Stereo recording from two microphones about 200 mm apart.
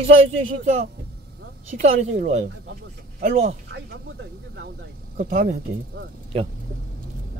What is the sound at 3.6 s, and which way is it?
Speech, 55° right (ahead or behind).